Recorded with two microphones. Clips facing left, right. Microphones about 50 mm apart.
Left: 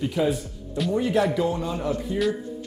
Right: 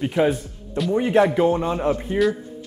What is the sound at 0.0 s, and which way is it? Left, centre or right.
Speech, right.